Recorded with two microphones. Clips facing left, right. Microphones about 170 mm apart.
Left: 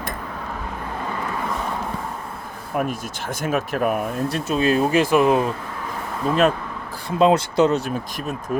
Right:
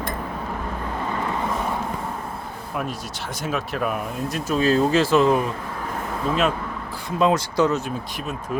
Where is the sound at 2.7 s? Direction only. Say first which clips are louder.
Left 5 dB; 50° left (ahead or behind).